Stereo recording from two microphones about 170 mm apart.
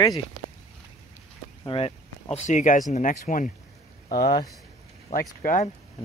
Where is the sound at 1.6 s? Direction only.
30° left (ahead or behind); by 3.4 s 50° left (ahead or behind).